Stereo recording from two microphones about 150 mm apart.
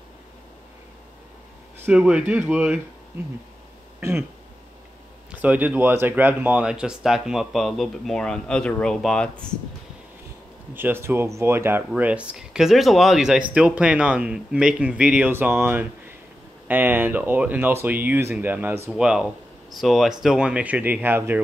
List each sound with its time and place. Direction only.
1.9 s speech: 5° right (ahead or behind)
5.3 s speech: 10° right (ahead or behind)
10.7 s speech: 15° right (ahead or behind)